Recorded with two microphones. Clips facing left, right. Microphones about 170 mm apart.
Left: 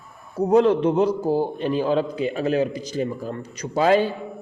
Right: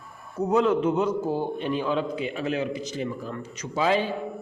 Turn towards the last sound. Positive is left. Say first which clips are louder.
# left 5 dB
turn(degrees=35)  # may be behind; listen again after turning